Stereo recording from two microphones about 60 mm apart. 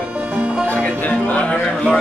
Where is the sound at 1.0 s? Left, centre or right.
Left.